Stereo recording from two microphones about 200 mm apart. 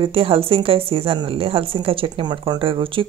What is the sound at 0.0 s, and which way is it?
Speech, 25° right (ahead or behind).